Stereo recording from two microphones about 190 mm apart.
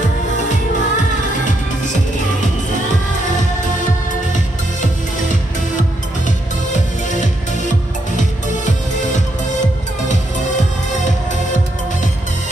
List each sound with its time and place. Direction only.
0.5 s music: 40° left (ahead or behind)
6.2 s music: 40° left (ahead or behind)